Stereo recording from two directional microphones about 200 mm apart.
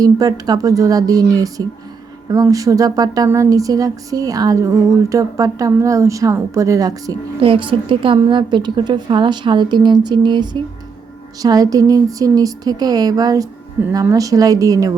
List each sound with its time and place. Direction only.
0.0 s speech: 20° right (ahead or behind)